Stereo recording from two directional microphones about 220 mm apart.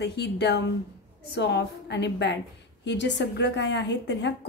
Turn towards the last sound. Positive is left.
turn(degrees=50)  # may be behind; listen again after turning